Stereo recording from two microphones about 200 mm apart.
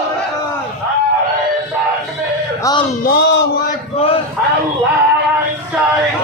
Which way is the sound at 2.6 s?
20° left (ahead or behind).